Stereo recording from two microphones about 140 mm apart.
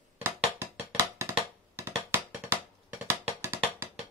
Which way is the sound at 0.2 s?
15° right (ahead or behind).